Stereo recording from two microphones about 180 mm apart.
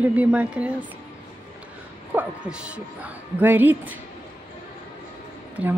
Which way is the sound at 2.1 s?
5° right (ahead or behind).